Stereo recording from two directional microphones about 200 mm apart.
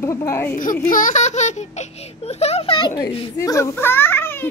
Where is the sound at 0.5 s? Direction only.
45° left (ahead or behind).